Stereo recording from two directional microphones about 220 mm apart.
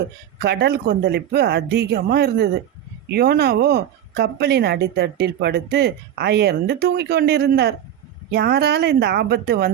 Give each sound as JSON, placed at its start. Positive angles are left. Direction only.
{"t": 0.3, "sound": "a woman's voice", "side_deg": -50}